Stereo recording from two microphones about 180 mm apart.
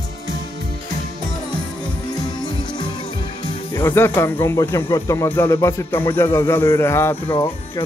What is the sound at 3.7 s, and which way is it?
Speech, 10° left (ahead or behind).